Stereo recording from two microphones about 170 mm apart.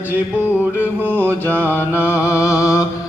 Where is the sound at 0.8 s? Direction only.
10° right (ahead or behind).